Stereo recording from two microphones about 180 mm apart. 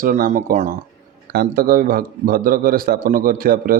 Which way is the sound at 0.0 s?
55° right (ahead or behind).